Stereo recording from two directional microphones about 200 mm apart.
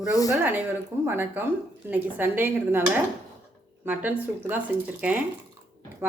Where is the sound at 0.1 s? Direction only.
15° left (ahead or behind).